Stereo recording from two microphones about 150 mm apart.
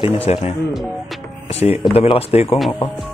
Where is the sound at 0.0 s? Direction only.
40° left (ahead or behind).